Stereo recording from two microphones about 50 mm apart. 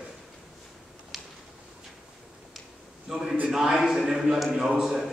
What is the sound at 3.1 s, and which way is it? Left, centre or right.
A man's voice, centre.